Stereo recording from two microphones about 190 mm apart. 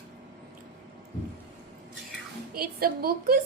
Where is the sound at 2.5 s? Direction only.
55° right (ahead or behind).